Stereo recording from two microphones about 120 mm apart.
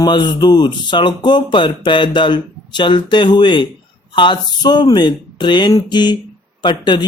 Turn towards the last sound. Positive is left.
turn(degrees=40)  # may be behind; listen again after turning